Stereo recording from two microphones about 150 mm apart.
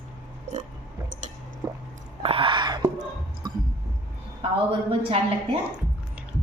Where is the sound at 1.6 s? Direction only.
20° right (ahead or behind).